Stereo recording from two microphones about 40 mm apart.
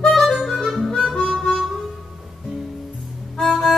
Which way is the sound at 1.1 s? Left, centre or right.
Centre.